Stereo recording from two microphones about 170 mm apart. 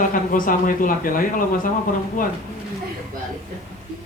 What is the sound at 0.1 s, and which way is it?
Speech, 55° left (ahead or behind).